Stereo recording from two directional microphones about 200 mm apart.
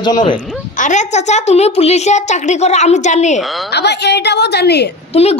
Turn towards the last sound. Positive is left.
turn(degrees=30)  # may be behind; listen again after turning